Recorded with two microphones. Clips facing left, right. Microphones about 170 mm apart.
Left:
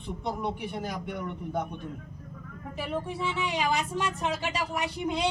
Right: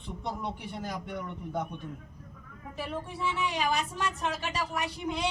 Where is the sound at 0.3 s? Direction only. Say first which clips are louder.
Left 4 dB; 15° left (ahead or behind).